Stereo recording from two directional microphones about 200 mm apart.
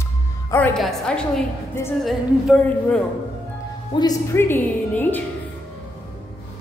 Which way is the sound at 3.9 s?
20° left (ahead or behind).